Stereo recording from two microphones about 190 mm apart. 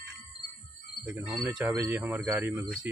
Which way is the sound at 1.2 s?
20° right (ahead or behind).